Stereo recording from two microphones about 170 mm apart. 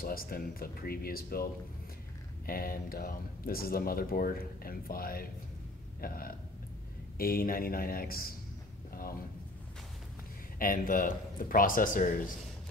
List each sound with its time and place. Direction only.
0.0 s speech: 60° left (ahead or behind)
5.9 s burping: 60° left (ahead or behind)
7.2 s speech: 60° left (ahead or behind)
10.6 s speech: 55° left (ahead or behind)